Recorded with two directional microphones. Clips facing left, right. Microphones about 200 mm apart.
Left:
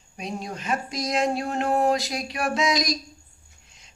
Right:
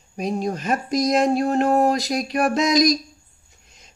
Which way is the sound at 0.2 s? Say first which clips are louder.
Right 8 dB; 45° right (ahead or behind).